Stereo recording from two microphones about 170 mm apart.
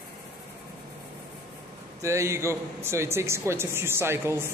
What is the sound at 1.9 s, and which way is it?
Speech, 15° right (ahead or behind).